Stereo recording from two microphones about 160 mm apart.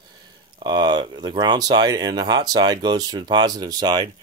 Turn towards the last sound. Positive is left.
turn(degrees=-25)  # may be behind; listen again after turning